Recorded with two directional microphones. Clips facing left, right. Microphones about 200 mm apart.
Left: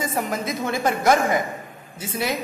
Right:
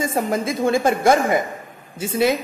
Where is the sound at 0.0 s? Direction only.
25° right (ahead or behind).